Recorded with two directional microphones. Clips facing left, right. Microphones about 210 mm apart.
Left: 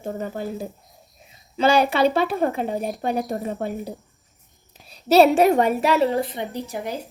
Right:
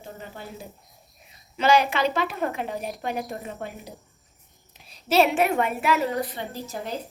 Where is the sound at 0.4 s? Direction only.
45° left (ahead or behind).